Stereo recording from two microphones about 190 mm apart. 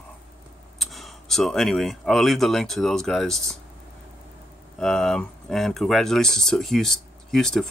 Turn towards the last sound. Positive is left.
turn(degrees=0)  # may be behind; listen again after turning